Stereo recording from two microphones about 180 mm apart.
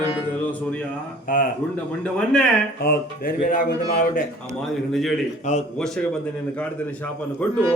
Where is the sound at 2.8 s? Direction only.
55° left (ahead or behind).